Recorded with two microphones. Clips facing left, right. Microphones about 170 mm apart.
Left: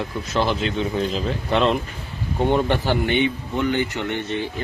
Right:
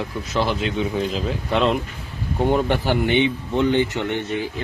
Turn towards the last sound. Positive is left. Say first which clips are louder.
# right 1 dB
turn(degrees=-15)  # may be behind; listen again after turning